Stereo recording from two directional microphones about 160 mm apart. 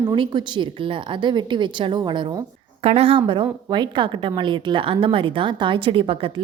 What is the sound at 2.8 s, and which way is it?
A woman's voice, 40° right (ahead or behind).